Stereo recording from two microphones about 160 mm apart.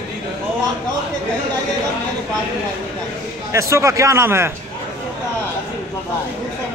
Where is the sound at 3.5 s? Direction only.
20° right (ahead or behind).